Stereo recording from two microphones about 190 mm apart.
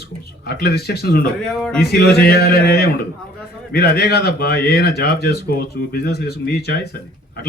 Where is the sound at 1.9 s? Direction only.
55° left (ahead or behind).